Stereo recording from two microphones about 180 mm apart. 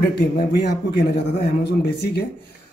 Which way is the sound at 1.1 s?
65° left (ahead or behind).